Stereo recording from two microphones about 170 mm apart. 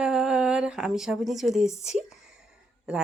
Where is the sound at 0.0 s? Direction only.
5° right (ahead or behind).